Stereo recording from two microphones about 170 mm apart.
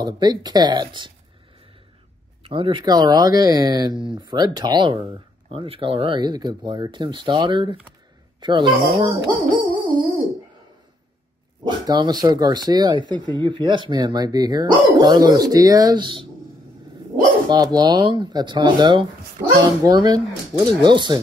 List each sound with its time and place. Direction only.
0.0 s speech: 25° right (ahead or behind)
2.4 s speech: 30° right (ahead or behind)
9.5 s music: 30° right (ahead or behind)
11.6 s speech: 25° right (ahead or behind)
17.5 s speech: 20° right (ahead or behind)